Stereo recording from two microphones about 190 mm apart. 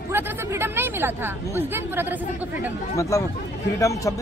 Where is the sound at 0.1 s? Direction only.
10° right (ahead or behind).